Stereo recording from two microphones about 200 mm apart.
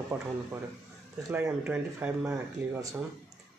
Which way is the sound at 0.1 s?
10° right (ahead or behind).